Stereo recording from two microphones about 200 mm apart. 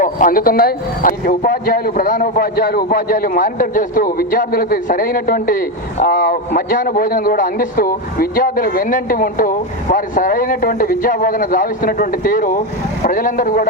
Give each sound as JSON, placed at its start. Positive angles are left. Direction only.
{"t": 0.0, "sound": "speech", "side_deg": 40}